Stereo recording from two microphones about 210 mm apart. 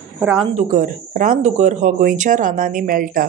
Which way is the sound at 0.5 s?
35° right (ahead or behind).